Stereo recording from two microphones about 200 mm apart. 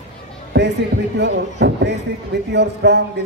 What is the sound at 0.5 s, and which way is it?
A man's voice, 60° right (ahead or behind).